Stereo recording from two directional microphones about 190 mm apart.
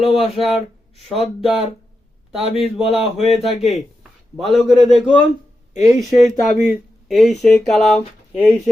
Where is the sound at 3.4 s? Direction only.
Centre (ahead or behind).